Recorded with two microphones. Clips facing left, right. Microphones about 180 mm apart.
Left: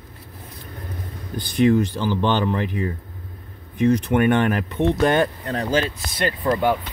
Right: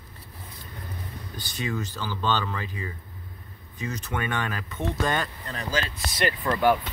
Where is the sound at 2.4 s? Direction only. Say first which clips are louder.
Left 10 dB; 60° left (ahead or behind).